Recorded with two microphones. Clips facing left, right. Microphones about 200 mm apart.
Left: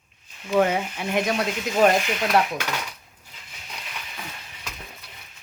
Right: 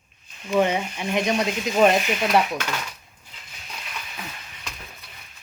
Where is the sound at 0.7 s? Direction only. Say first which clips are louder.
Even; 10° left (ahead or behind).